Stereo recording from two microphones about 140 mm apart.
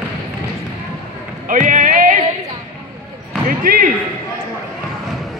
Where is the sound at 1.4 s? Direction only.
70° right (ahead or behind).